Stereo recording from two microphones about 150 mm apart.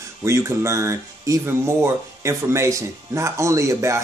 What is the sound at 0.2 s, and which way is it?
Speech, 20° right (ahead or behind).